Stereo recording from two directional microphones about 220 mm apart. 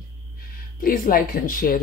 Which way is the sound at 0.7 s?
40° left (ahead or behind).